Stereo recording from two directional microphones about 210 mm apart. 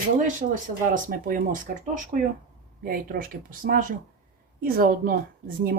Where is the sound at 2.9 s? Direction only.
45° right (ahead or behind).